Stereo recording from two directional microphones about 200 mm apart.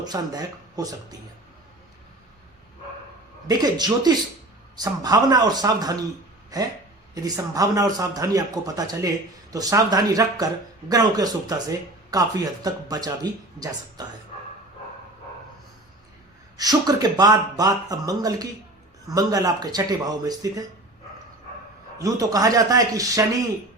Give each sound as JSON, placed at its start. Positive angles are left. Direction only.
{"t": 0.0, "sound": "speech", "side_deg": -20}
{"t": 3.4, "sound": "speech", "side_deg": -20}
{"t": 16.6, "sound": "speech", "side_deg": -20}
{"t": 21.9, "sound": "speech", "side_deg": -15}